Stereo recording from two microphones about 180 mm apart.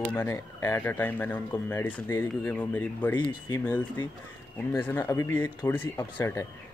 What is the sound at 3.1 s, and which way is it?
Speech, 25° left (ahead or behind).